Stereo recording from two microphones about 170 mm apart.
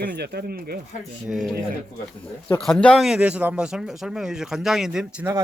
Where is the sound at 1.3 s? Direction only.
Centre (ahead or behind).